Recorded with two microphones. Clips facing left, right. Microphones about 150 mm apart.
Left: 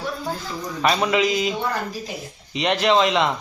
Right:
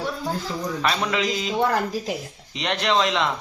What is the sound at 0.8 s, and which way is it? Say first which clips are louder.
Speech: left 6 dB; 5° left (ahead or behind).